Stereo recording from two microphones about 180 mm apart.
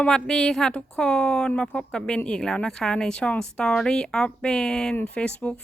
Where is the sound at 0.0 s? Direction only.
5° left (ahead or behind).